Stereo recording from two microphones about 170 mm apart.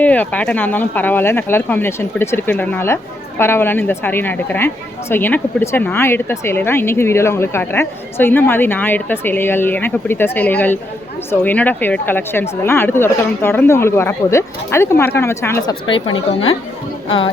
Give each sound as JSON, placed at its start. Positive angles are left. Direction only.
{"t": 0.0, "sound": "speech", "side_deg": 10}
{"t": 15.9, "sound": "a woman's voice", "side_deg": 30}